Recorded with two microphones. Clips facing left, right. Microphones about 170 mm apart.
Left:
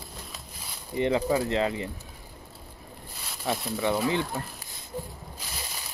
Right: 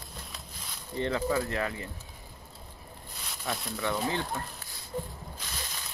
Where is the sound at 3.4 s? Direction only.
20° left (ahead or behind).